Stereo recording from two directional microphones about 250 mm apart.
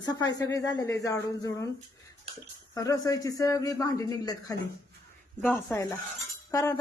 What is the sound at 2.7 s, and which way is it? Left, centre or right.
A woman's voice, centre.